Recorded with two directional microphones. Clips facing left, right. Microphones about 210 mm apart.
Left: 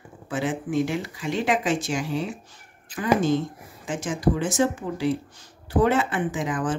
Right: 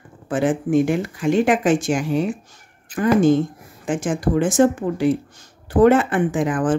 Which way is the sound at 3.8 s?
50° right (ahead or behind).